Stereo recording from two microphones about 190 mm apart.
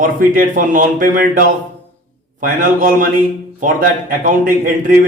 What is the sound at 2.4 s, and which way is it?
A man's voice, 45° right (ahead or behind).